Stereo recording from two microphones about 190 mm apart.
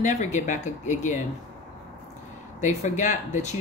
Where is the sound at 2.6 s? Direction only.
40° left (ahead or behind).